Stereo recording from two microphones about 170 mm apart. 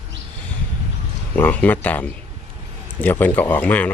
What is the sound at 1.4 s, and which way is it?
Speech, 10° left (ahead or behind).